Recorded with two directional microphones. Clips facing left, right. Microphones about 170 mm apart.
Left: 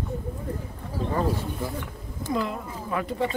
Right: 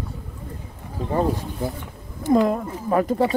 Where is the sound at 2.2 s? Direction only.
45° right (ahead or behind).